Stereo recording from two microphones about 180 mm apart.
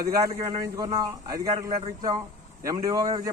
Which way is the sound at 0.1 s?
20° right (ahead or behind).